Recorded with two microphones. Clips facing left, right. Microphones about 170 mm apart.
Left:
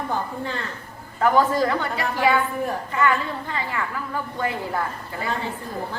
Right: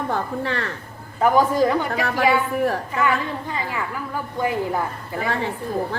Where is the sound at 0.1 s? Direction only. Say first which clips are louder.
Right 3 dB; 70° right (ahead or behind).